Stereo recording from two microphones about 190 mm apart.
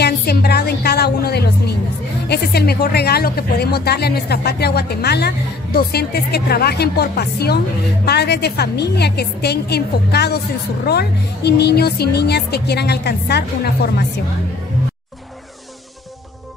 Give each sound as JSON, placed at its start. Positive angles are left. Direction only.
{"t": 0.0, "sound": "music", "side_deg": 55}
{"t": 2.2, "sound": "speech", "side_deg": 55}